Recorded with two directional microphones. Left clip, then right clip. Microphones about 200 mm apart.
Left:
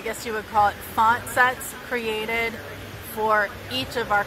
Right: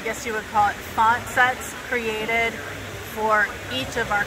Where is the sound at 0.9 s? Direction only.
45° left (ahead or behind).